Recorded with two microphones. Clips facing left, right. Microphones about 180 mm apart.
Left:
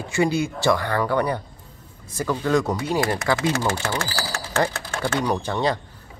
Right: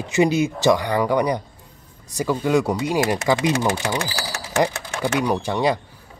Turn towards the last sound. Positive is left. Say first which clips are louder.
# right 2 dB
turn(degrees=-10)  # may be behind; listen again after turning